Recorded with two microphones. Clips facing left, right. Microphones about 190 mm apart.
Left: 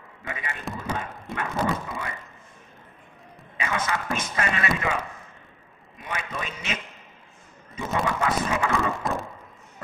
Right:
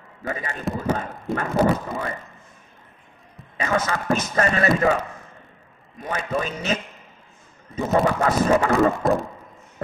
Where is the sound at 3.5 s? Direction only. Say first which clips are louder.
Right 5 dB; 40° right (ahead or behind).